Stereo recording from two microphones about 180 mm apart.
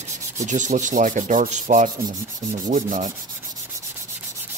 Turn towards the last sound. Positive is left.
turn(degrees=-45)  # may be behind; listen again after turning